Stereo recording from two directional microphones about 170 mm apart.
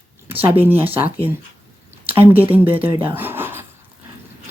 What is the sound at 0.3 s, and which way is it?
Speech, 10° right (ahead or behind).